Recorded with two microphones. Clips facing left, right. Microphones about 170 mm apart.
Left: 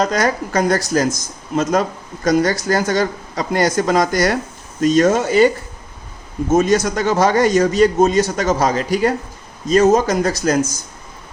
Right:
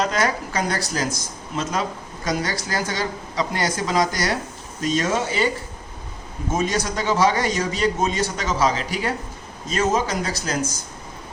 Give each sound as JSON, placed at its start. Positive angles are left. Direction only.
{"t": 0.0, "sound": "speech", "side_deg": 40}
{"t": 6.5, "sound": "speech", "side_deg": 45}